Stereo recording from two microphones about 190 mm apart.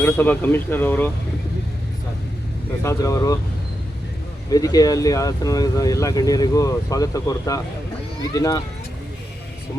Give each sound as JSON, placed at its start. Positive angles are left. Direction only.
{"t": 0.0, "sound": "speech", "side_deg": 10}
{"t": 2.8, "sound": "speech", "side_deg": 15}
{"t": 4.5, "sound": "speech", "side_deg": 20}